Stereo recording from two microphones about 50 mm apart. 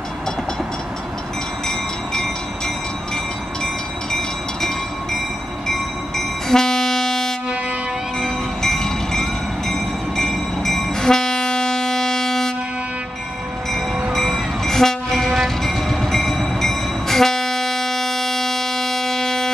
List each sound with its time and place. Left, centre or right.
3.6 s train: centre
14.6 s train: centre